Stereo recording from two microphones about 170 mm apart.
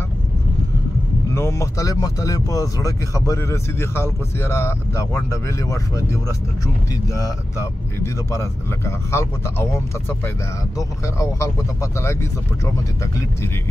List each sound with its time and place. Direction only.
1.3 s speech: 15° left (ahead or behind)